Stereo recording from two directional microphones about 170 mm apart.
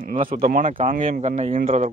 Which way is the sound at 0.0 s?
55° right (ahead or behind).